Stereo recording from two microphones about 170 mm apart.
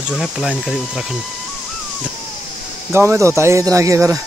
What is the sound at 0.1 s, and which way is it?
Speech, centre (ahead or behind).